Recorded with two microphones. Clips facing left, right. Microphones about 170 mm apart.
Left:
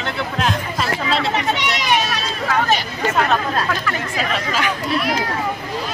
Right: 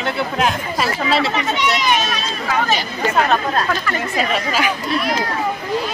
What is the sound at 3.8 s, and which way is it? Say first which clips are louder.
Speech: right 2 dB; 5° right (ahead or behind).